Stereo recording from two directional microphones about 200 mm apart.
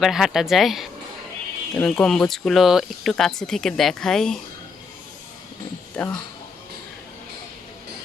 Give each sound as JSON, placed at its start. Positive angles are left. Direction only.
{"t": 0.0, "sound": "speech", "side_deg": 0}
{"t": 6.0, "sound": "speech", "side_deg": 5}